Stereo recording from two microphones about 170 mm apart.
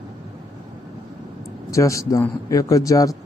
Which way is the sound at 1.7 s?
20° left (ahead or behind).